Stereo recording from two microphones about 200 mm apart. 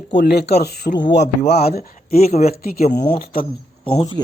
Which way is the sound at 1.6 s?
50° left (ahead or behind).